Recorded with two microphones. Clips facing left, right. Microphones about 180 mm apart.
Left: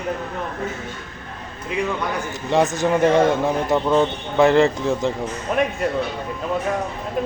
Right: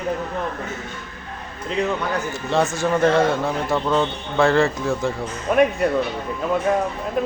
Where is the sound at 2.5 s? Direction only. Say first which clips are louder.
Left 2 dB; 15° left (ahead or behind).